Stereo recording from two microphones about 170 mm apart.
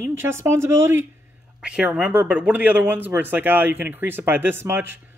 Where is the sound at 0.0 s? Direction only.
15° right (ahead or behind).